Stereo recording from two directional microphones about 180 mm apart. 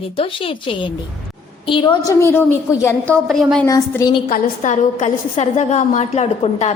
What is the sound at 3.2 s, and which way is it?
Speech, centre (ahead or behind).